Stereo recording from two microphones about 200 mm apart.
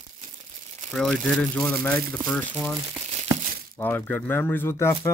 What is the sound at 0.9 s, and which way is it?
Speech, centre (ahead or behind).